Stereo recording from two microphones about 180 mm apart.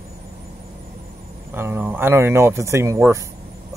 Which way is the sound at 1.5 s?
15° right (ahead or behind).